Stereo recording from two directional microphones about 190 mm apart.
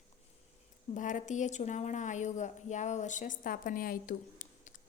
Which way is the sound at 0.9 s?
40° left (ahead or behind).